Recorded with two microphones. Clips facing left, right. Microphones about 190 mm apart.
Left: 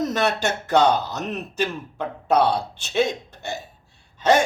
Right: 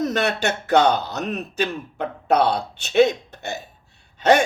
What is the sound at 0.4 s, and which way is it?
Speech, 60° right (ahead or behind).